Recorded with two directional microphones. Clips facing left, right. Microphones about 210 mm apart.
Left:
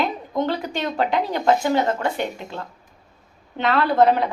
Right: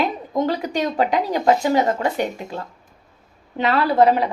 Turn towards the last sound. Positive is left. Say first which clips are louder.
# right 1 dB
turn(degrees=-5)  # may be behind; listen again after turning